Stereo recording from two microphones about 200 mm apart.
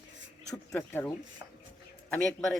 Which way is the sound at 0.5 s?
10° left (ahead or behind).